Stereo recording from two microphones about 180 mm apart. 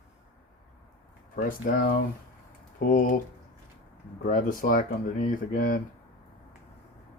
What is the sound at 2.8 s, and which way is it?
Speech, 50° left (ahead or behind).